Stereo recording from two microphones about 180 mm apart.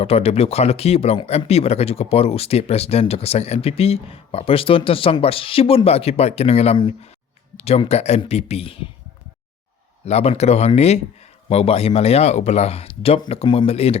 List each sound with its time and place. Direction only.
0.0 s speech: 35° left (ahead or behind)
10.1 s speech: 35° left (ahead or behind)